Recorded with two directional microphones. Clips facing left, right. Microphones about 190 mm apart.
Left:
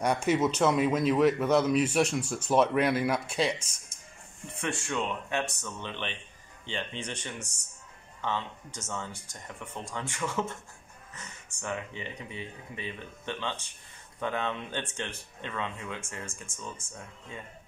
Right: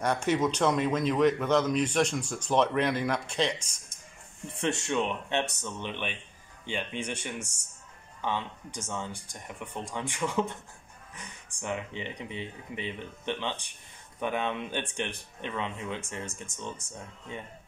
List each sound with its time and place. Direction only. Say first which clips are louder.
0.0 s a man's voice: left 1 dB; 10° left (ahead or behind)
4.6 s speech: right 3 dB; 25° right (ahead or behind)